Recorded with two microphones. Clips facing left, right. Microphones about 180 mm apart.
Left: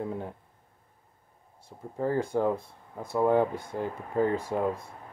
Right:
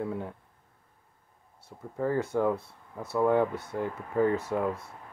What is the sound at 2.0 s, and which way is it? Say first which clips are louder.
Speech: even; 15° left (ahead or behind).